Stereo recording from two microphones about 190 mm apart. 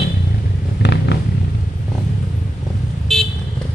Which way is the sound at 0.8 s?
65° left (ahead or behind).